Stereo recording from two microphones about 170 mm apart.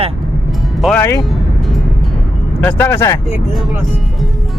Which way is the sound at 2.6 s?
10° left (ahead or behind).